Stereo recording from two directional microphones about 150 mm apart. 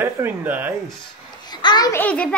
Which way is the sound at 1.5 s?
30° left (ahead or behind).